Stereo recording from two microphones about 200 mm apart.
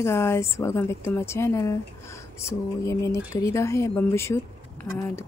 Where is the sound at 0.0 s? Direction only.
15° left (ahead or behind).